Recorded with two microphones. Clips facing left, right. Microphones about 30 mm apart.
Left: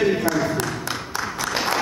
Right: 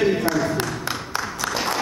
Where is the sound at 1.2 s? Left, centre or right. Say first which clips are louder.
Left 2 dB; centre.